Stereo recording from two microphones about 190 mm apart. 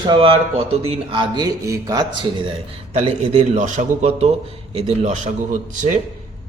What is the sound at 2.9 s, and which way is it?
A man's voice, 35° right (ahead or behind).